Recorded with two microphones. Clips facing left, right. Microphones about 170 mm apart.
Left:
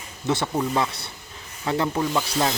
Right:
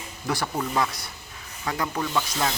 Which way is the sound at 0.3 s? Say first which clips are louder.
Left 4 dB; 25° left (ahead or behind).